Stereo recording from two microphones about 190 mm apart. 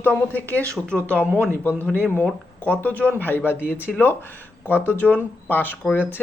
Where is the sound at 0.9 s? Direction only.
5° right (ahead or behind).